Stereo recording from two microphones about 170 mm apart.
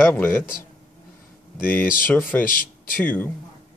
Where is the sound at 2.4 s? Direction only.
55° left (ahead or behind).